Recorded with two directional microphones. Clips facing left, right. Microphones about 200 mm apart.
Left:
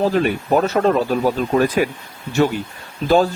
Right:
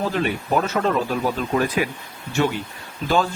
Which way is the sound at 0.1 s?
40° left (ahead or behind).